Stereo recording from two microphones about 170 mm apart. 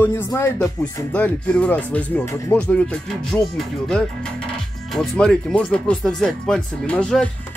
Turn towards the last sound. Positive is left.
turn(degrees=5)  # may be behind; listen again after turning